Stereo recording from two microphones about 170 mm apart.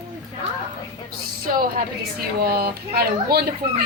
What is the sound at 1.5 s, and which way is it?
A woman's voice, 60° right (ahead or behind).